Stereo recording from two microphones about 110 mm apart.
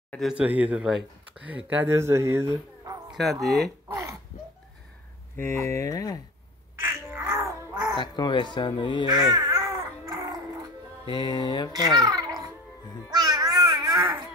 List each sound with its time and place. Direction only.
0.2 s speech: 10° right (ahead or behind)
2.0 s speech: 25° right (ahead or behind)
3.4 s speech: centre (ahead or behind)
5.4 s speech: 25° left (ahead or behind)
6.8 s crow: 20° right (ahead or behind)
8.0 s speech: 45° left (ahead or behind)
9.0 s babbling: 40° right (ahead or behind)
11.1 s speech: 45° left (ahead or behind)
11.7 s a child's voice: 35° right (ahead or behind)
13.2 s babbling: 35° right (ahead or behind)